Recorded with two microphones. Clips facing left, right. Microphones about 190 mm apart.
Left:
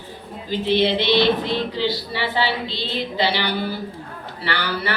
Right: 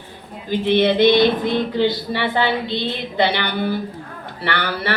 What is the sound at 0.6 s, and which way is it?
Speech, 55° right (ahead or behind).